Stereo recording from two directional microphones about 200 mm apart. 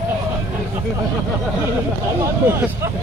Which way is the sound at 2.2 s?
15° right (ahead or behind).